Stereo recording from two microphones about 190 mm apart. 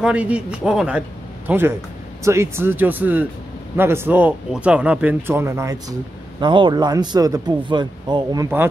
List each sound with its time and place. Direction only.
0.0 s speech: 5° right (ahead or behind)